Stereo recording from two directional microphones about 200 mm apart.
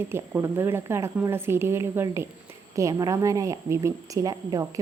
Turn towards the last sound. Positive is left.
turn(degrees=-15)  # may be behind; listen again after turning